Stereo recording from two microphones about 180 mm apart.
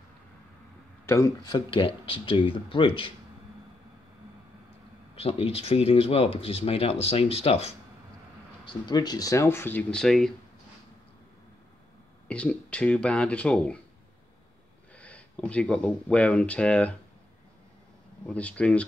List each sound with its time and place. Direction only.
1.0 s speech: 15° left (ahead or behind)
5.1 s speech: 30° left (ahead or behind)
8.6 s speech: 25° left (ahead or behind); by 10.3 s centre (ahead or behind)
12.3 s speech: 5° left (ahead or behind)
15.0 s speech: 5° left (ahead or behind)
18.2 s speech: 5° left (ahead or behind)